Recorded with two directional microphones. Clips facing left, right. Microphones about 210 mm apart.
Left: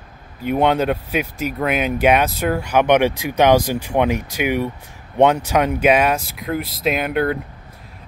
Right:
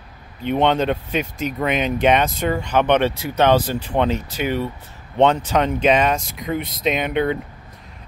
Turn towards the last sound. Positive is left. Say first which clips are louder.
# left 1 dB
turn(degrees=5)  # may be behind; listen again after turning